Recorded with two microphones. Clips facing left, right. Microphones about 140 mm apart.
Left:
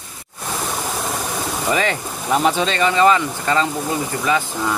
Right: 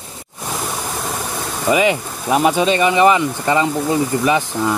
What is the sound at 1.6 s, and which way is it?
Speech, 10° right (ahead or behind).